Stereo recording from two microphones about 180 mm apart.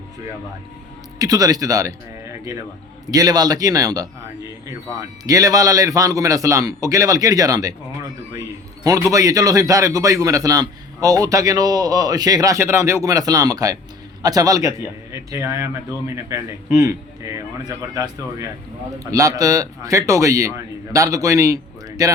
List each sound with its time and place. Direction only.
1.2 s a man's voice: 20° right (ahead or behind)
3.1 s a man's voice: 20° right (ahead or behind)